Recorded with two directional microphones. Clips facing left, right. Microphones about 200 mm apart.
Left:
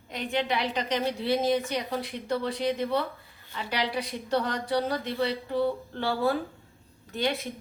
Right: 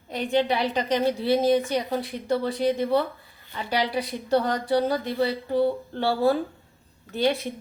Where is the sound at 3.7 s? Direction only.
35° right (ahead or behind).